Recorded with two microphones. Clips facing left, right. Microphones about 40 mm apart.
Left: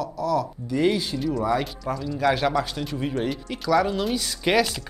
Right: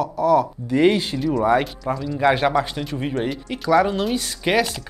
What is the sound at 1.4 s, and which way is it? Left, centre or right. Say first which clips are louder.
Speech: right 8 dB; right.